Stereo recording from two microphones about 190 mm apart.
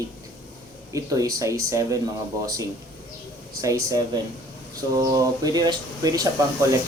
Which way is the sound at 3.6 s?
15° right (ahead or behind).